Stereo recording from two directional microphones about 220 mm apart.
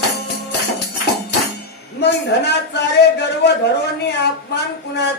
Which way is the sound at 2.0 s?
50° left (ahead or behind).